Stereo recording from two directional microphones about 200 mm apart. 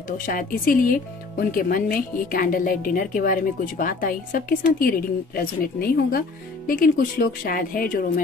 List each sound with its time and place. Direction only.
0.2 s speech: 45° left (ahead or behind)